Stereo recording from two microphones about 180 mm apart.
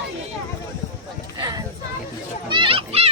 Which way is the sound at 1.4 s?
20° right (ahead or behind).